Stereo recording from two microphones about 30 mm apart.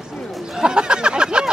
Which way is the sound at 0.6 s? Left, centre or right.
Right.